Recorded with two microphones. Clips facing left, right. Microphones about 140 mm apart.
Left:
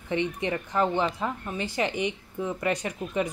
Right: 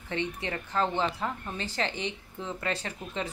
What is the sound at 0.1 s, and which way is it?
A woman's voice, 15° left (ahead or behind).